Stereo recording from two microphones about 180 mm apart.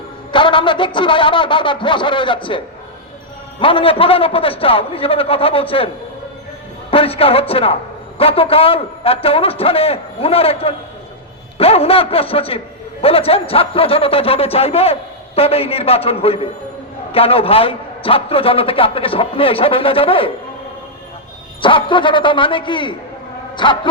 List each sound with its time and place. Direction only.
0.3 s a man's voice: 25° left (ahead or behind)
3.6 s a man's voice: 30° left (ahead or behind)
6.9 s a man's voice: 30° left (ahead or behind)
21.6 s a man's voice: 25° left (ahead or behind)